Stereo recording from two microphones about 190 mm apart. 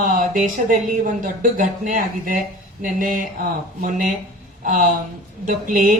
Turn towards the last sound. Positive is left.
turn(degrees=-45)  # may be behind; listen again after turning